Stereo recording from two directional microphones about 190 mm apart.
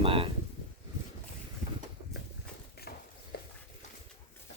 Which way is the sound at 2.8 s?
55° left (ahead or behind).